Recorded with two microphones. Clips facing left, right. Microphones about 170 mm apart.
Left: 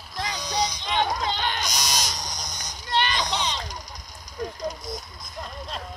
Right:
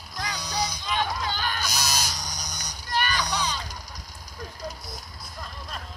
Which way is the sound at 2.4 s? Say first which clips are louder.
Left 1 dB; 70° right (ahead or behind).